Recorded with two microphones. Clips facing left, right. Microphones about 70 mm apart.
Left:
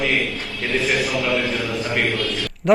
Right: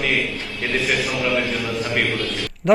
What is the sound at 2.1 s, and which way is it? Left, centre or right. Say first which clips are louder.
Speech: left 1 dB; right.